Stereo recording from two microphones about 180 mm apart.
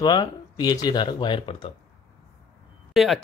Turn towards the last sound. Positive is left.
turn(degrees=0)  # may be behind; listen again after turning